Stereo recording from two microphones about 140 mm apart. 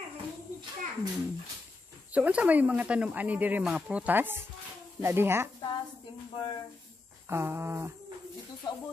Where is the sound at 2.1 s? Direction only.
10° right (ahead or behind).